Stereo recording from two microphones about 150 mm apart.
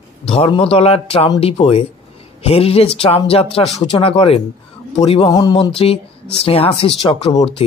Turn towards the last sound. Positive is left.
turn(degrees=35)  # may be behind; listen again after turning